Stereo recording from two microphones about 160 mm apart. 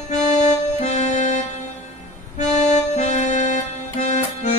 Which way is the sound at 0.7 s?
45° left (ahead or behind).